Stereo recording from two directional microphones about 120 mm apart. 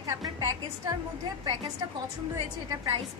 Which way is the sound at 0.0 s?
30° right (ahead or behind).